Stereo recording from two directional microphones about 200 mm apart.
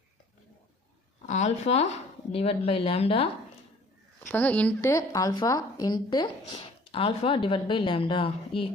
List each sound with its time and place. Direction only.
1.3 s a woman's voice: 35° left (ahead or behind)
4.2 s a woman's voice: 10° left (ahead or behind); by 8.7 s 25° left (ahead or behind)